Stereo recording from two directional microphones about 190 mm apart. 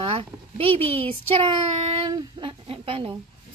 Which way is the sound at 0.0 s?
30° right (ahead or behind).